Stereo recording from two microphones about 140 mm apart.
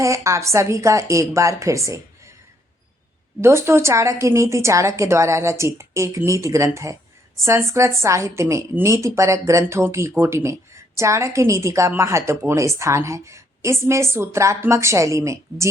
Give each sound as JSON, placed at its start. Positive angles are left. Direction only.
{"t": 0.0, "sound": "a woman's voice", "side_deg": -20}
{"t": 3.4, "sound": "a woman's voice", "side_deg": -20}